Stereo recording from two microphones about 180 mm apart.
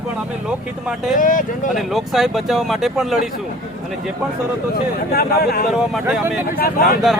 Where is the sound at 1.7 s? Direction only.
Centre (ahead or behind).